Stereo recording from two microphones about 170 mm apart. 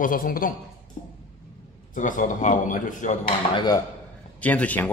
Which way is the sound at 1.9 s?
50° left (ahead or behind).